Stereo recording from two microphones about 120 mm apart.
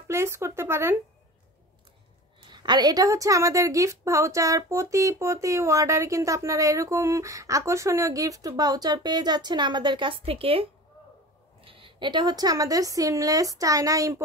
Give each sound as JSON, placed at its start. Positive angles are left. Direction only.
{"t": 0.1, "sound": "a woman's voice", "side_deg": -20}
{"t": 2.5, "sound": "a woman's voice", "side_deg": -40}